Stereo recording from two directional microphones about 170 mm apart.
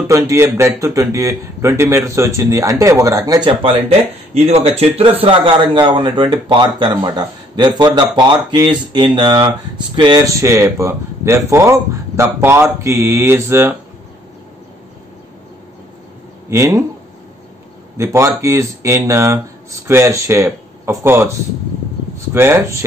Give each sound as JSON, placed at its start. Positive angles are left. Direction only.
{"t": 0.1, "sound": "a man's voice", "side_deg": -15}
{"t": 4.3, "sound": "speech", "side_deg": -40}
{"t": 16.4, "sound": "speech", "side_deg": -15}
{"t": 17.9, "sound": "a man's voice", "side_deg": -15}
{"t": 22.3, "sound": "a man's voice", "side_deg": -15}